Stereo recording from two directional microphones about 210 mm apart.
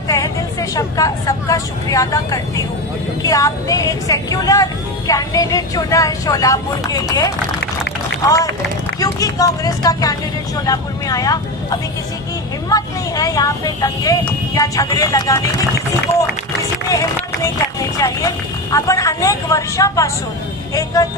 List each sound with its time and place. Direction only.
0.1 s a woman's voice: 15° left (ahead or behind)
17.9 s a woman's voice: 15° left (ahead or behind)